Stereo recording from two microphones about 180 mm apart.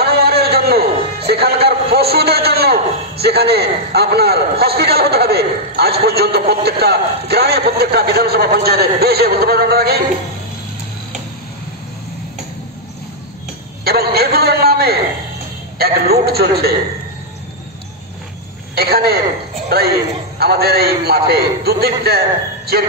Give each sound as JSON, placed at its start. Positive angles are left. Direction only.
{"t": 0.0, "sound": "a man's voice", "side_deg": -60}
{"t": 13.8, "sound": "a man's voice", "side_deg": -60}
{"t": 18.8, "sound": "a man's voice", "side_deg": -60}